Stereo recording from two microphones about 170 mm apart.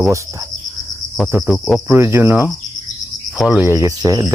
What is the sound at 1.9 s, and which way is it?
Speech, 15° right (ahead or behind).